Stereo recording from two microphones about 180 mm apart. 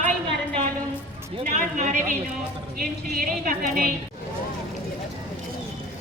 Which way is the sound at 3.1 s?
55° right (ahead or behind).